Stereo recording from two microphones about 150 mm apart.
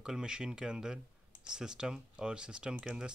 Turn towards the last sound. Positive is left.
turn(degrees=-5)  # may be behind; listen again after turning